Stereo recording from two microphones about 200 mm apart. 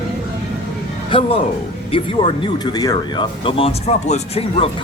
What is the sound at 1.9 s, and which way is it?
Speech, 25° left (ahead or behind).